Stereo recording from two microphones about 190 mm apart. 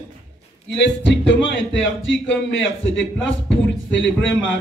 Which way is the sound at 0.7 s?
70° left (ahead or behind).